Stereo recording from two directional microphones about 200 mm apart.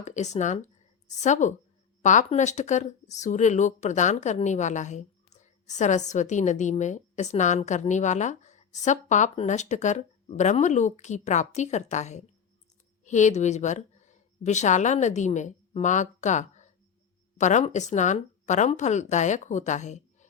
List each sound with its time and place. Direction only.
0.0 s a woman's voice: 35° left (ahead or behind)